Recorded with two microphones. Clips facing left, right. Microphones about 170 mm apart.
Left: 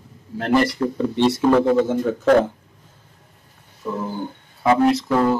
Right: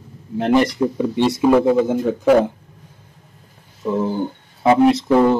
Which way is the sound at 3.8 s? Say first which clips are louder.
Right 6 dB; 25° right (ahead or behind).